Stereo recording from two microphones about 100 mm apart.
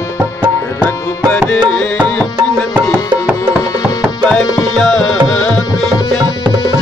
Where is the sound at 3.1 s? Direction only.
15° right (ahead or behind).